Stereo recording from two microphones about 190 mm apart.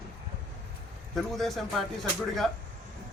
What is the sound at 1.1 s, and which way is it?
Speech, centre (ahead or behind).